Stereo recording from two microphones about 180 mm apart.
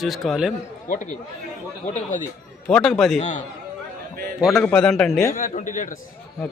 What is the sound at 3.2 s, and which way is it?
Speech, 40° left (ahead or behind).